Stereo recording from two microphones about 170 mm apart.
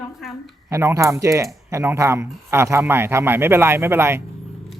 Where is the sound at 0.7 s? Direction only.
15° right (ahead or behind).